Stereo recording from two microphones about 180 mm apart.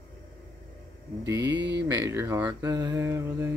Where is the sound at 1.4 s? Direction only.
75° right (ahead or behind).